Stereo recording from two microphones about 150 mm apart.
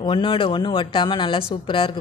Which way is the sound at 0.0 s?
30° left (ahead or behind).